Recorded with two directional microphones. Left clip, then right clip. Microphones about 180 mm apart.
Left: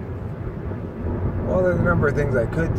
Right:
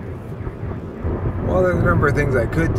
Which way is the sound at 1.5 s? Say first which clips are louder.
Right 2 dB; 15° right (ahead or behind).